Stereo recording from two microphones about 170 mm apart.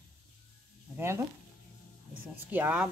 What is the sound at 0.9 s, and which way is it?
Speech, 15° right (ahead or behind).